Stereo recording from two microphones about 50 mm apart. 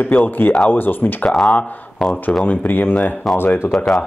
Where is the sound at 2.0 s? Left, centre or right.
Centre.